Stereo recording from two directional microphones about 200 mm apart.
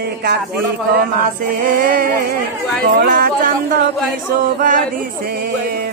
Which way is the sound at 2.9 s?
50° right (ahead or behind).